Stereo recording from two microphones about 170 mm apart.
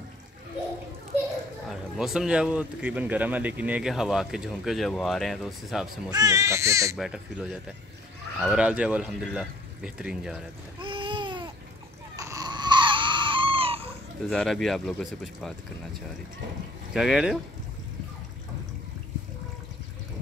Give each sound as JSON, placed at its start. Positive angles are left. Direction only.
{"t": 1.7, "sound": "speech", "side_deg": -5}
{"t": 6.0, "sound": "speech", "side_deg": -20}
{"t": 8.4, "sound": "speech", "side_deg": -5}
{"t": 10.8, "sound": "babbling", "side_deg": -30}
{"t": 12.2, "sound": "crying", "side_deg": -20}
{"t": 14.2, "sound": "speech", "side_deg": 5}
{"t": 16.9, "sound": "speech", "side_deg": -5}